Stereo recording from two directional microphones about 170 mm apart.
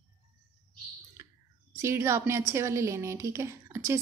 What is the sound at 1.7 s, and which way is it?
A woman's voice, 15° right (ahead or behind).